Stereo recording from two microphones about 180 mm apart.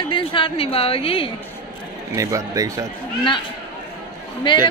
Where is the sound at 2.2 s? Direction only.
15° right (ahead or behind).